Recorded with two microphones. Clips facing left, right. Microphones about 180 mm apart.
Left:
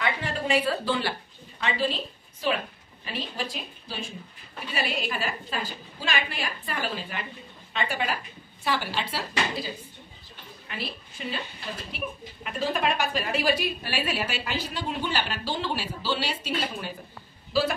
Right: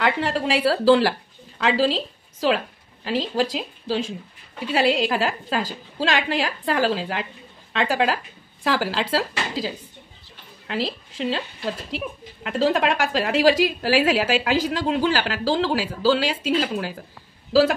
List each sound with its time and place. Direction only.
0.0 s a woman's voice: 75° right (ahead or behind)